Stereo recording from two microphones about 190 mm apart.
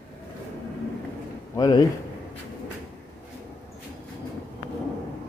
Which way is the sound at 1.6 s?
20° left (ahead or behind).